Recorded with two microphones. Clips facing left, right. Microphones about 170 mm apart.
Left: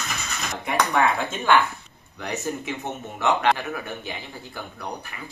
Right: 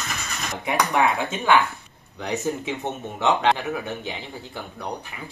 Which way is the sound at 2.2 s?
20° right (ahead or behind).